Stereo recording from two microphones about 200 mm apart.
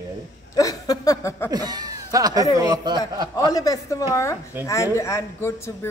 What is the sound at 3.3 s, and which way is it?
A man's voice, 20° left (ahead or behind).